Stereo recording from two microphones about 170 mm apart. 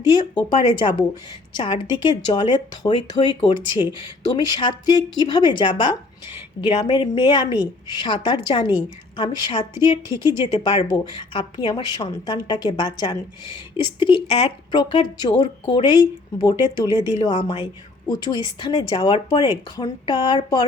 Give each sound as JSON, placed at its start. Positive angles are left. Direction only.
{"t": 0.0, "sound": "a woman's voice", "side_deg": 25}